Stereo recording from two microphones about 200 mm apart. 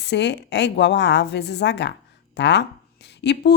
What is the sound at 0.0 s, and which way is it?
A woman's voice, 60° left (ahead or behind).